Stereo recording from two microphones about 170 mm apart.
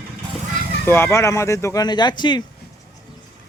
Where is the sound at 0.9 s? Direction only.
15° left (ahead or behind).